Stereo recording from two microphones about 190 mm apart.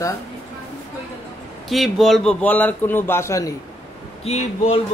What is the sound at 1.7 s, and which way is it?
A man's voice, centre (ahead or behind).